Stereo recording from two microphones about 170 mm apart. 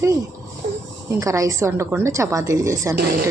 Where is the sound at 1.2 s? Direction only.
20° right (ahead or behind).